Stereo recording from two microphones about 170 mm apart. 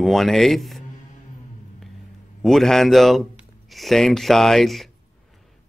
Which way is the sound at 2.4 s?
Centre (ahead or behind).